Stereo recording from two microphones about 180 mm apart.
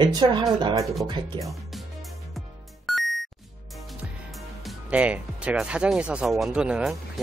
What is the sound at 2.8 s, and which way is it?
Music, centre (ahead or behind).